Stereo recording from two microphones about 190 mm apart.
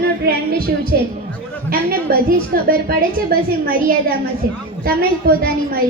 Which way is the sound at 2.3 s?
50° right (ahead or behind).